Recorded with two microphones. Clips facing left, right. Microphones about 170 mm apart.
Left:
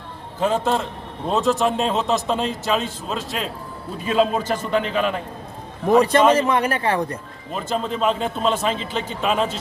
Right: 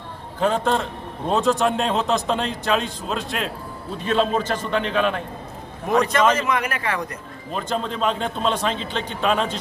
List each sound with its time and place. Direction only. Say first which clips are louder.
0.3 s a man's voice: even; 5° left (ahead or behind)
6.1 s a man's voice: left 3 dB; 30° left (ahead or behind)
7.5 s a man's voice: left 1 dB; 5° left (ahead or behind)